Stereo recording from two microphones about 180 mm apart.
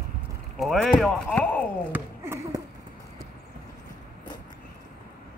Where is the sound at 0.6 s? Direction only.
Centre (ahead or behind).